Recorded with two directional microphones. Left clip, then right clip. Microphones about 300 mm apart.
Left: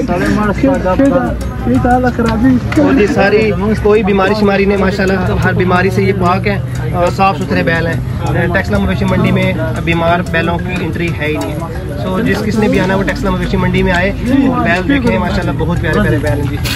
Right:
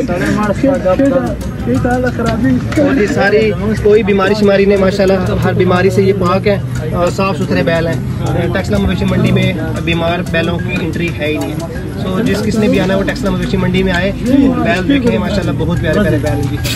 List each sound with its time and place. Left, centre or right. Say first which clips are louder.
0.2 s speech: even; centre
2.8 s speech: left 1 dB; left; by 10.5 s centre
12.2 s speech: even; centre